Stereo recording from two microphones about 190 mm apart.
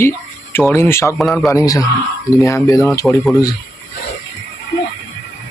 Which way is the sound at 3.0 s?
5° left (ahead or behind).